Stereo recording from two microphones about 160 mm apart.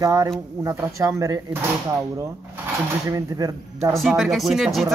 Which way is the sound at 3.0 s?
25° right (ahead or behind).